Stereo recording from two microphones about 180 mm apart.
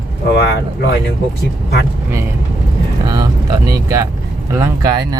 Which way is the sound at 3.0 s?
20° right (ahead or behind).